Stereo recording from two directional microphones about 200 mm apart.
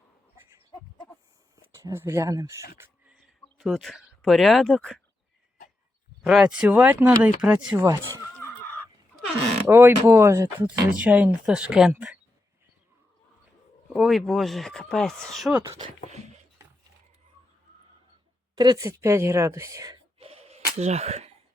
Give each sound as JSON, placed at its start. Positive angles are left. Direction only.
{"t": 1.7, "sound": "speech", "side_deg": -15}
{"t": 6.2, "sound": "speech", "side_deg": -5}
{"t": 9.6, "sound": "speech", "side_deg": -10}
{"t": 13.9, "sound": "speech", "side_deg": 0}
{"t": 18.5, "sound": "speech", "side_deg": -20}
{"t": 20.1, "sound": "gasp", "side_deg": -30}